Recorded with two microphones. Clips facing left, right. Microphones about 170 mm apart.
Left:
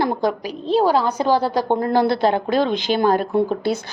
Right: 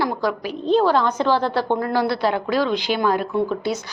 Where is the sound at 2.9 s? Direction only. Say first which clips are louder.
Left 5 dB; 40° left (ahead or behind).